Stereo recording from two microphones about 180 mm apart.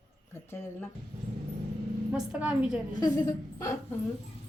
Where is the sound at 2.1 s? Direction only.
5° right (ahead or behind).